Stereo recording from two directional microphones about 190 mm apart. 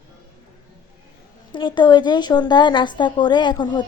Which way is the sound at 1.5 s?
25° left (ahead or behind).